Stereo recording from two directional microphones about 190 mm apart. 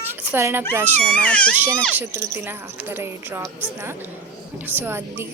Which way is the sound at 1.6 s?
10° right (ahead or behind).